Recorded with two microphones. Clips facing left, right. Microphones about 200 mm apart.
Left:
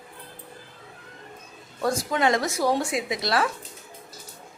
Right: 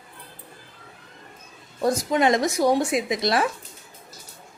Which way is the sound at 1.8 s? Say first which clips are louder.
Right 3 dB; 20° right (ahead or behind).